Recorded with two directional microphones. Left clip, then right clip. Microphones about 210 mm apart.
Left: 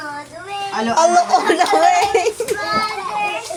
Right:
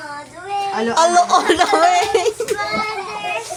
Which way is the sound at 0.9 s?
15° right (ahead or behind).